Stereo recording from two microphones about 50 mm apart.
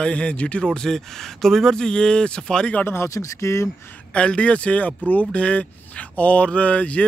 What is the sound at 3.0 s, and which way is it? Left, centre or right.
Speech, left.